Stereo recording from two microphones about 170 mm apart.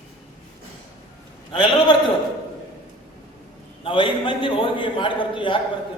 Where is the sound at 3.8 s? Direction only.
30° left (ahead or behind).